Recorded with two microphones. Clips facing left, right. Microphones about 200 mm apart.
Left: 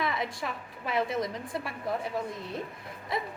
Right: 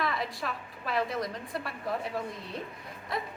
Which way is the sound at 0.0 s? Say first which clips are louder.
Left 1 dB; 20° left (ahead or behind).